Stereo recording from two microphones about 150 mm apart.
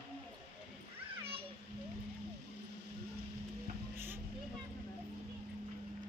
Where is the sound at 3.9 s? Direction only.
15° right (ahead or behind).